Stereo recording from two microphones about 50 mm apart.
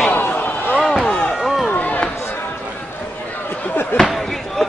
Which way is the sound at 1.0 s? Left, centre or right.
Left.